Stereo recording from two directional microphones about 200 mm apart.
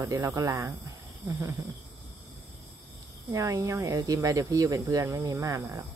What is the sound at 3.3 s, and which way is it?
Speech, 15° right (ahead or behind).